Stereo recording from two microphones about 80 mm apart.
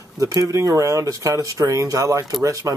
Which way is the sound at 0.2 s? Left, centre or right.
Right.